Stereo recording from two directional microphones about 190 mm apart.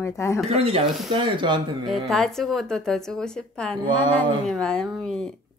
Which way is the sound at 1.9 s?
Centre (ahead or behind).